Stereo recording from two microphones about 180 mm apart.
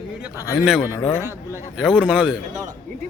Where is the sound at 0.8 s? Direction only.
15° left (ahead or behind).